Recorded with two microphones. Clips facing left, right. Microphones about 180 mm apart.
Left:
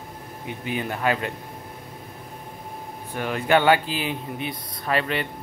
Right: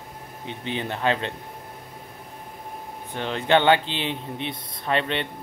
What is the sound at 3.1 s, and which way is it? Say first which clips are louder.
Speech: even; 25° right (ahead or behind).